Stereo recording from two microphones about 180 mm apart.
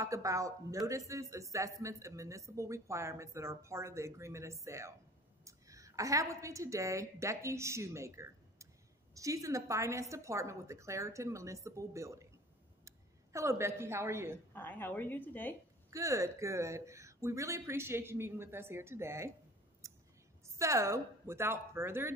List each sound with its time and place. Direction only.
0.0 s a man's voice: 15° right (ahead or behind)
14.5 s a woman's voice: 10° left (ahead or behind)
15.9 s a man's voice: 15° right (ahead or behind)
20.4 s a man's voice: 15° right (ahead or behind)